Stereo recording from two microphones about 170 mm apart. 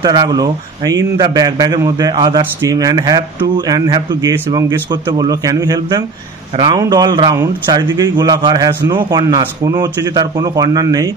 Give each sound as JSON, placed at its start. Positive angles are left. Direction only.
{"t": 0.0, "sound": "a man's voice", "side_deg": -25}